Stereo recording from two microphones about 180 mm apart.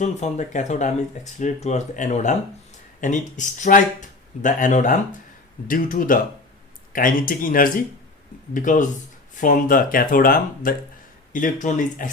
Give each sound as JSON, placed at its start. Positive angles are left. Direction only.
{"t": 0.0, "sound": "speech", "side_deg": 40}